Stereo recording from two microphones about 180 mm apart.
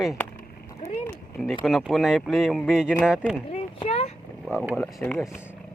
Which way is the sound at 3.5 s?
35° left (ahead or behind).